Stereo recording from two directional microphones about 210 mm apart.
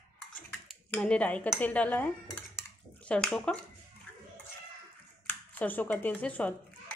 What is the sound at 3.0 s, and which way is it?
Speech, 5° left (ahead or behind).